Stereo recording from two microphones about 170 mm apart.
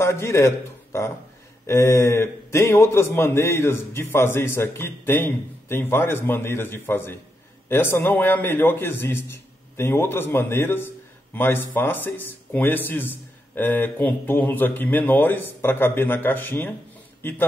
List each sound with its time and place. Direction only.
0.0 s a man's voice: 15° left (ahead or behind)